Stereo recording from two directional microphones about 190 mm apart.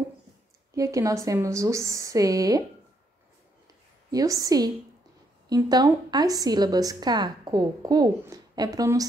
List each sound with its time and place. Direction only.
0.7 s speech: 15° right (ahead or behind)
4.1 s a woman's voice: 20° right (ahead or behind)